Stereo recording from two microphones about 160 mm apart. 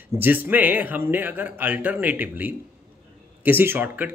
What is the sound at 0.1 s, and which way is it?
A man's voice, 10° right (ahead or behind).